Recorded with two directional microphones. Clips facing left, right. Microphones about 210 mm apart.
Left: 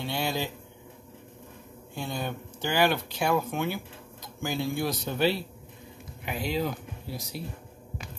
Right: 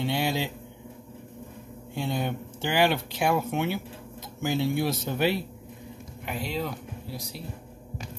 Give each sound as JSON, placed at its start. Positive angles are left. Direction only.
{"t": 0.0, "sound": "speech", "side_deg": -20}
{"t": 2.0, "sound": "speech", "side_deg": -20}
{"t": 6.2, "sound": "speech", "side_deg": 0}